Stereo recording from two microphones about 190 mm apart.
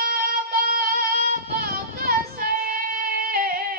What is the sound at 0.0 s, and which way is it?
Music, 50° right (ahead or behind).